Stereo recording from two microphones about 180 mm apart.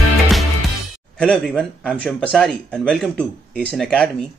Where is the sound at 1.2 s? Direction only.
Centre (ahead or behind).